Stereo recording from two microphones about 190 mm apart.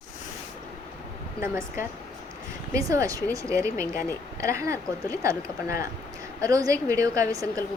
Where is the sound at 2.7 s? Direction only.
15° right (ahead or behind).